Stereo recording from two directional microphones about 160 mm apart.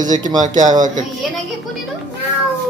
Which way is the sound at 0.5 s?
25° right (ahead or behind).